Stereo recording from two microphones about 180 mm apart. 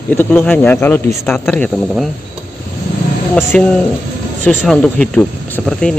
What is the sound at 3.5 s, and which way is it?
Speech, 5° left (ahead or behind).